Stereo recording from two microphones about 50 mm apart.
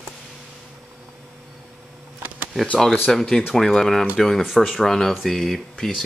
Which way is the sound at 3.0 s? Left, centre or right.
Centre.